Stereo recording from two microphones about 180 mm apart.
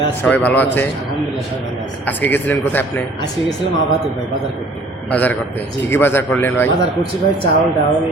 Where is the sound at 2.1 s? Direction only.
10° left (ahead or behind).